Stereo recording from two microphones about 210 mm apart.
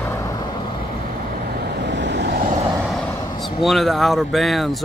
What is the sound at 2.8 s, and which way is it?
Vehicle, 5° left (ahead or behind).